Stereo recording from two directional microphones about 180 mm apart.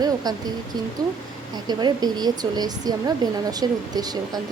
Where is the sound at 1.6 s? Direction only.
25° right (ahead or behind).